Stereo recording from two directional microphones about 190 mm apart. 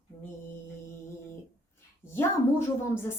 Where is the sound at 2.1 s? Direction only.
10° left (ahead or behind).